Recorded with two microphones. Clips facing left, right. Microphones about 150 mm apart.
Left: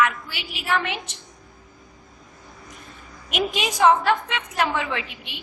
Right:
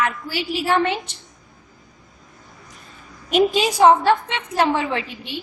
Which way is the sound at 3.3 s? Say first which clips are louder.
Right 8 dB; 35° right (ahead or behind).